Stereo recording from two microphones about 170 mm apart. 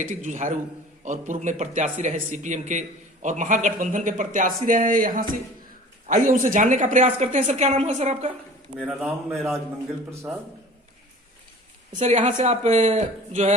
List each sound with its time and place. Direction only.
0.0 s speech: 50° right (ahead or behind)
8.8 s a man's voice: 5° right (ahead or behind)
11.9 s speech: 40° right (ahead or behind)